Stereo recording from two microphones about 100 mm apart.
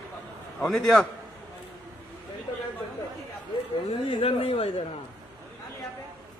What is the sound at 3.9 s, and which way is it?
Speech, 65° left (ahead or behind).